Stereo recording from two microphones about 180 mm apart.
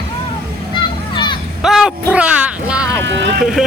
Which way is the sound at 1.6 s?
Centre (ahead or behind).